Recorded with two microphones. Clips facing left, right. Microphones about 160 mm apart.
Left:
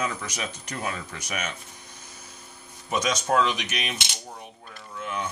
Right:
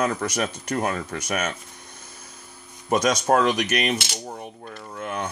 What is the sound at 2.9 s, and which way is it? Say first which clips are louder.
Speech: right 5 dB; 50° right (ahead or behind).